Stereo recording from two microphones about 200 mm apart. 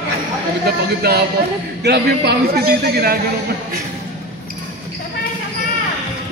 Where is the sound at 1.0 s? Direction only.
50° right (ahead or behind).